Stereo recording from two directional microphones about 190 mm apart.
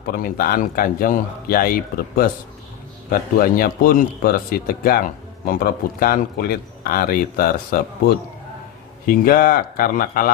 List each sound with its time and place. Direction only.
0.0 s speech: 50° left (ahead or behind)